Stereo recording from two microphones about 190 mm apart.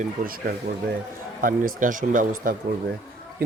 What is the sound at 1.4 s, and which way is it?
Speech, 45° right (ahead or behind).